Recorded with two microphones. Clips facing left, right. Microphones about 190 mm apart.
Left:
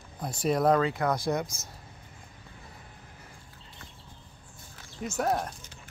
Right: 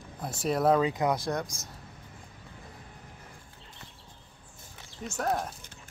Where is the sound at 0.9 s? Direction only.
15° right (ahead or behind).